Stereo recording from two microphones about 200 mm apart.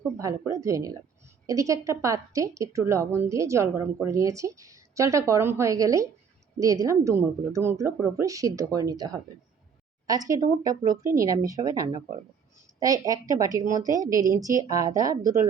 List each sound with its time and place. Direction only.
0.2 s a woman's voice: 15° right (ahead or behind)